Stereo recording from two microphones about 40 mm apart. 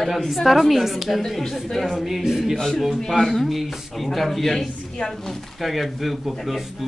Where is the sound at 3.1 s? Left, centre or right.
Centre.